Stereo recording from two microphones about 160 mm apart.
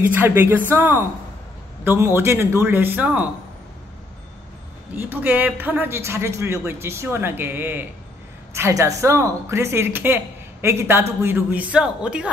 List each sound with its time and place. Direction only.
0.1 s a man's voice: 15° right (ahead or behind)
4.9 s a man's voice: 10° right (ahead or behind)